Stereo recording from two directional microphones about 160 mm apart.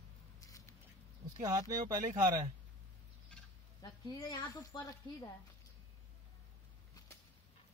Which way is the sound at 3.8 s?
25° left (ahead or behind).